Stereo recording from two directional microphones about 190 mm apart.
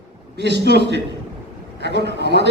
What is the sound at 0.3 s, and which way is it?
A man's voice, 65° right (ahead or behind).